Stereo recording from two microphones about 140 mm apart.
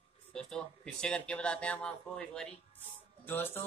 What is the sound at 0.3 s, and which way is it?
Speech, 5° left (ahead or behind).